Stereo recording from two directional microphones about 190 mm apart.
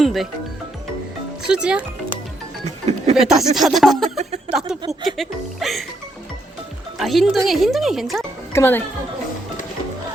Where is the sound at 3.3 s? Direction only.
Centre (ahead or behind).